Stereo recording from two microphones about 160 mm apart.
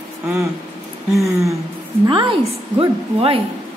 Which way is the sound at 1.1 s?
Centre (ahead or behind).